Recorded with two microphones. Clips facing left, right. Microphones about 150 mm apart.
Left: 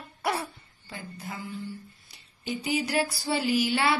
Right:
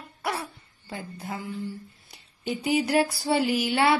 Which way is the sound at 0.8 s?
45° right (ahead or behind).